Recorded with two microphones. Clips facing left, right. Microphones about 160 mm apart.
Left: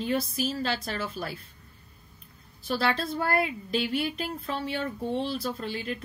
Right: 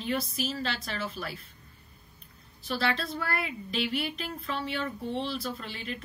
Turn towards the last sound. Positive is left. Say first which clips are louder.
# left 4 dB
turn(degrees=40)  # may be behind; listen again after turning